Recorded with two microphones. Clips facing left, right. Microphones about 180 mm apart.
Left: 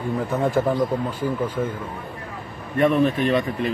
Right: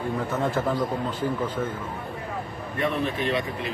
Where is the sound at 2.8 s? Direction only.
50° left (ahead or behind).